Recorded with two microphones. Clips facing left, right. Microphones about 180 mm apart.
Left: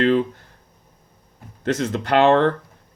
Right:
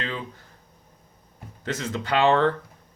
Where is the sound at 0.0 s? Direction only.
60° left (ahead or behind).